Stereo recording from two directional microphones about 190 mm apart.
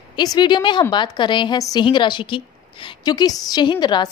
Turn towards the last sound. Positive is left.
turn(degrees=25)  # may be behind; listen again after turning